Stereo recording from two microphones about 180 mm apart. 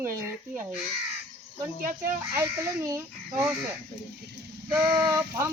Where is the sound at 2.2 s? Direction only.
15° right (ahead or behind).